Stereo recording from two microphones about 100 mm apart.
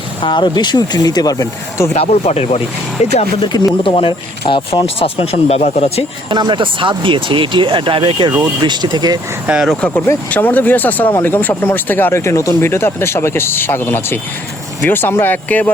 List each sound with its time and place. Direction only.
0.2 s speech: 50° left (ahead or behind); by 1.9 s 35° left (ahead or behind)
2.0 s speech: 90° left
3.5 s speech: 45° left (ahead or behind)
3.9 s speech: 60° left (ahead or behind); by 6.1 s 90° left
6.3 s speech: 50° right (ahead or behind)
8.6 s speech: 50° right (ahead or behind)
9.5 s speech: 5° right (ahead or behind)
10.3 s speech: 15° left (ahead or behind)